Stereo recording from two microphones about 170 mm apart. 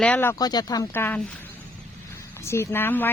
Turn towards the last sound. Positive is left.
turn(degrees=10)  # may be behind; listen again after turning